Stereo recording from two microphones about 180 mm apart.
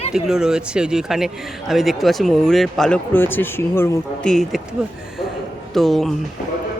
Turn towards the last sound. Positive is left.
turn(degrees=0)  # may be behind; listen again after turning